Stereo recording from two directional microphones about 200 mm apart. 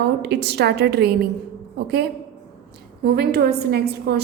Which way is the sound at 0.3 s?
55° right (ahead or behind).